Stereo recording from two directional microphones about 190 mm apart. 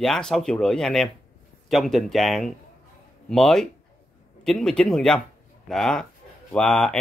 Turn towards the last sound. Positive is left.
turn(degrees=5)  # may be behind; listen again after turning